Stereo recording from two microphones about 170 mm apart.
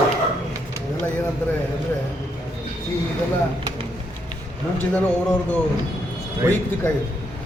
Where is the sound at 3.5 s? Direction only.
35° right (ahead or behind).